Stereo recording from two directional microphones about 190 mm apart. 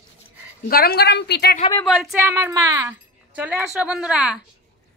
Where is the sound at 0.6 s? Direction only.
50° left (ahead or behind).